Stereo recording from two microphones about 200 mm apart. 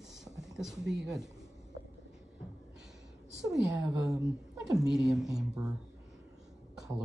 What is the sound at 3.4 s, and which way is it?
Speech, centre (ahead or behind).